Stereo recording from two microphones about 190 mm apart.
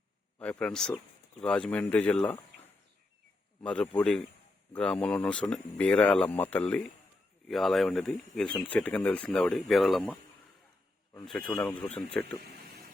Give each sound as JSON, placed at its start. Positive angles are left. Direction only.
{"t": 0.3, "sound": "speech", "side_deg": 5}
{"t": 3.6, "sound": "speech", "side_deg": 5}
{"t": 11.5, "sound": "speech", "side_deg": 10}
{"t": 12.4, "sound": "a sound", "side_deg": -60}